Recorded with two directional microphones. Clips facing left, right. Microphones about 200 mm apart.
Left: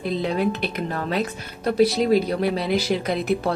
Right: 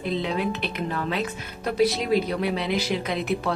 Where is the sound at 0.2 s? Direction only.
40° left (ahead or behind).